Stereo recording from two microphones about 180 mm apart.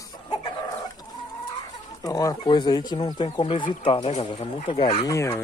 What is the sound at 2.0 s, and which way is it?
Speech, 20° left (ahead or behind).